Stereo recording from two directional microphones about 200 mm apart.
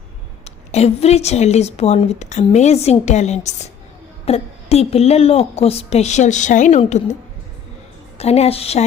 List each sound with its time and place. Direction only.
0.4 s a woman's voice: 30° left (ahead or behind)
8.2 s a woman's voice: 30° left (ahead or behind)